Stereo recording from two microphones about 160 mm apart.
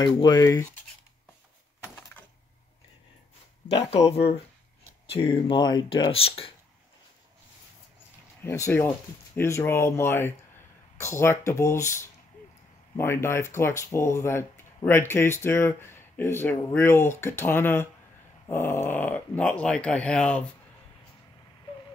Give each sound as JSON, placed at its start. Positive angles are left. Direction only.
{"t": 0.0, "sound": "speech", "side_deg": 25}
{"t": 3.8, "sound": "speech", "side_deg": 40}
{"t": 8.5, "sound": "speech", "side_deg": 15}